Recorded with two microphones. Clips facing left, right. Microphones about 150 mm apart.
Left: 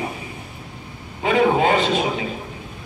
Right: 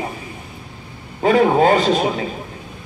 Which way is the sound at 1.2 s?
40° right (ahead or behind).